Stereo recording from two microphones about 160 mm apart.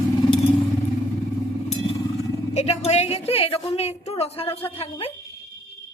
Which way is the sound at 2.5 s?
40° left (ahead or behind).